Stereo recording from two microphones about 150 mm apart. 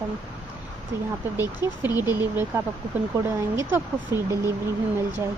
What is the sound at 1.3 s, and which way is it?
Speech, 15° right (ahead or behind).